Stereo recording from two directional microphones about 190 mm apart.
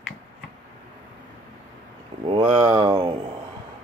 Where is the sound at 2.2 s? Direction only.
30° right (ahead or behind).